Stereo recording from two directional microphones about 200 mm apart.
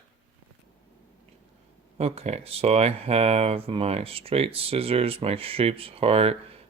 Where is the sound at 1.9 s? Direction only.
30° right (ahead or behind).